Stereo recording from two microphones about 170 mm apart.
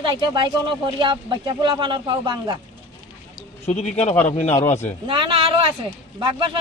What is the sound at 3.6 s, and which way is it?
Speech, 40° left (ahead or behind).